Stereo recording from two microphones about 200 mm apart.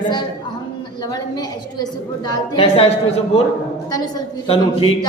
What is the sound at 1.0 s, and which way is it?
A woman's voice, 20° left (ahead or behind).